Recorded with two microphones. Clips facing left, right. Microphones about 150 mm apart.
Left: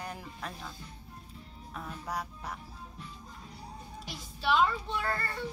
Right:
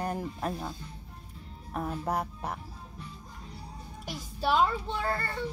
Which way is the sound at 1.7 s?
50° right (ahead or behind).